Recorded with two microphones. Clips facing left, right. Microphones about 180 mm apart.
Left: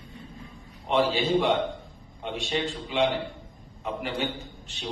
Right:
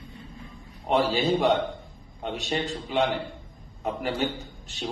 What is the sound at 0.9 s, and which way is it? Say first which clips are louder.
A man's voice: right 1 dB; 45° right (ahead or behind).